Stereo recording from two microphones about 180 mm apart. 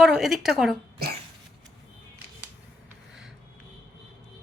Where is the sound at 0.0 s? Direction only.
Centre (ahead or behind).